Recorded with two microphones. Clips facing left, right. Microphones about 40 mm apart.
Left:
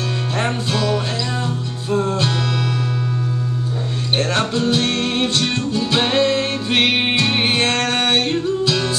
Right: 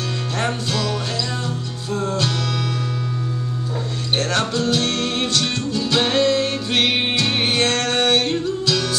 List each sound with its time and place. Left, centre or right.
0.4 s music: centre
4.2 s music: centre